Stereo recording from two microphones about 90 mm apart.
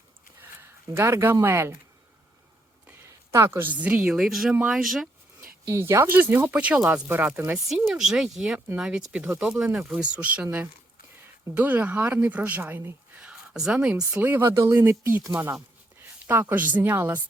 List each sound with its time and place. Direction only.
0.6 s speech: 30° right (ahead or behind)
3.1 s a sound: 35° right (ahead or behind)
3.7 s speech: 15° right (ahead or behind)
5.4 s speech: 30° right (ahead or behind)
7.7 s speech: 5° right (ahead or behind); by 13.2 s 25° right (ahead or behind)
13.2 s speech: 10° right (ahead or behind)
14.1 s speech: 20° right (ahead or behind)
14.5 s speech: 35° right (ahead or behind)
14.8 s speech: 25° right (ahead or behind)
16.2 s speech: 25° right (ahead or behind)